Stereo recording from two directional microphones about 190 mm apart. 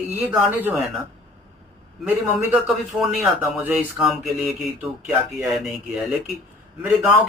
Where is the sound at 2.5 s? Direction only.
Centre (ahead or behind).